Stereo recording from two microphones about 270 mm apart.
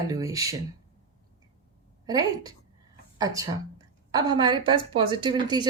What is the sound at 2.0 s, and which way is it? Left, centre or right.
A woman's voice, centre.